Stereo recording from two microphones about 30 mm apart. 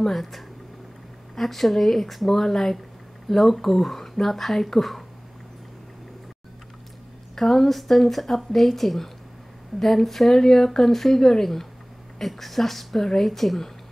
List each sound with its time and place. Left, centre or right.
0.1 s speech: centre
7.3 s speech: centre